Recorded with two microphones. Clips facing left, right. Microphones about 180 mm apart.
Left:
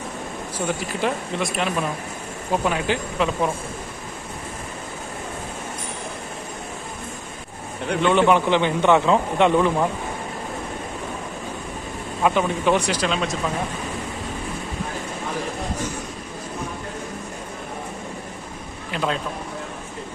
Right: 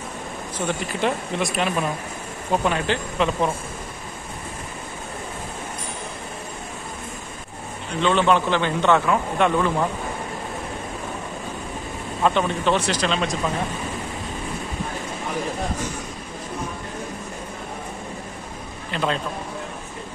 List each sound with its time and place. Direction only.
0.6 s speech: 5° left (ahead or behind)
8.0 s a man's voice: 15° left (ahead or behind)
12.2 s a man's voice: 10° left (ahead or behind)
18.9 s speech: 5° left (ahead or behind)